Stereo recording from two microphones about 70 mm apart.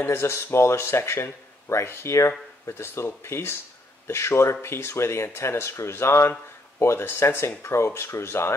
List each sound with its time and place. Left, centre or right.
0.0 s speech: left